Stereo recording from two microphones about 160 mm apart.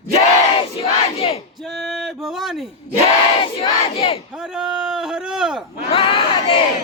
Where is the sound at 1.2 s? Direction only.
40° left (ahead or behind).